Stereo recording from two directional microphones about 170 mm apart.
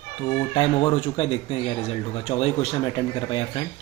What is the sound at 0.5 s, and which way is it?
Speech, 30° left (ahead or behind).